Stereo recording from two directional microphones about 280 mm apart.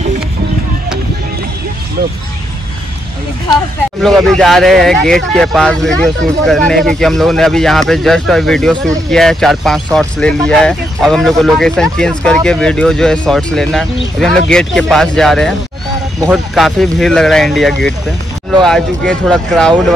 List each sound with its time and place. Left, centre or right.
4.0 s speech: centre